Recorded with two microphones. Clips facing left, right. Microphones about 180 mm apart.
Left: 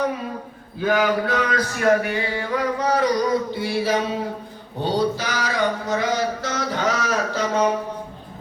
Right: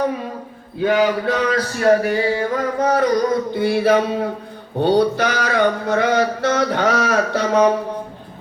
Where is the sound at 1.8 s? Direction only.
35° right (ahead or behind).